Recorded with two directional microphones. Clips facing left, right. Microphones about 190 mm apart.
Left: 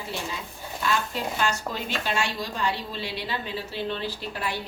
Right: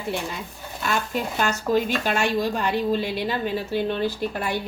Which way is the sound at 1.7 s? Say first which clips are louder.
Right 8 dB; 50° right (ahead or behind).